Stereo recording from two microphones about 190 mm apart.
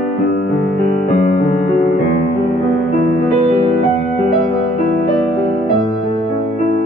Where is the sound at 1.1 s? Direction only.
40° left (ahead or behind).